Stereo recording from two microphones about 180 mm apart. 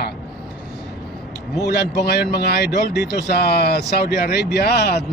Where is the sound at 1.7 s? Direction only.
60° left (ahead or behind).